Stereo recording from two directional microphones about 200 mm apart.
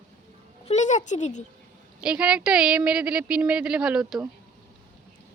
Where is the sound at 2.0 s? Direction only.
5° right (ahead or behind).